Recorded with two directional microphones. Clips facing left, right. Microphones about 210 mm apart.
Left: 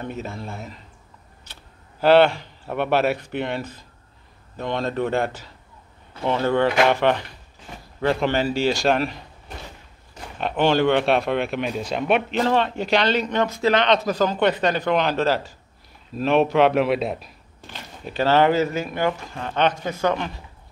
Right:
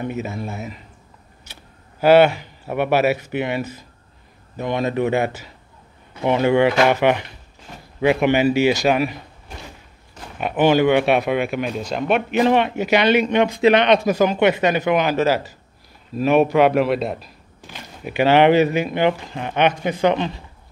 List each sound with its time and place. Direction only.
0.0 s speech: 5° right (ahead or behind)
10.3 s speech: 5° right (ahead or behind)
12.3 s speech: 15° right (ahead or behind)